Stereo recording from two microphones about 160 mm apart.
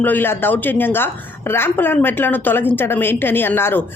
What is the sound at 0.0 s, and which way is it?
A woman's voice, 10° left (ahead or behind).